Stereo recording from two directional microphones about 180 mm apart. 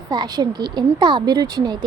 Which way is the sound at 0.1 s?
20° right (ahead or behind).